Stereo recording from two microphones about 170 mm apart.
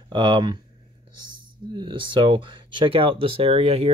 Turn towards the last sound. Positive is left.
turn(degrees=-35)  # may be behind; listen again after turning